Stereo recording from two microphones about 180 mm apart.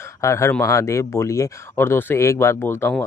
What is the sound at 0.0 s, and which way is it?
Speech, 15° left (ahead or behind).